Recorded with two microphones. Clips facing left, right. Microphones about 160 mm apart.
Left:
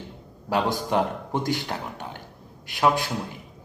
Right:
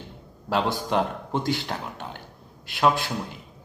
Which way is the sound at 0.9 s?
15° left (ahead or behind).